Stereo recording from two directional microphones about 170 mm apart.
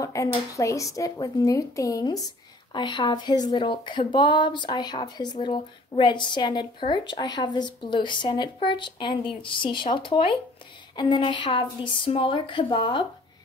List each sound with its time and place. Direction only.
0.0 s speech: 20° left (ahead or behind)